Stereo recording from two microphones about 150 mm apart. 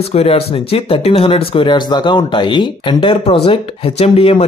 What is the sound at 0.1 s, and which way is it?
Speech, 40° left (ahead or behind).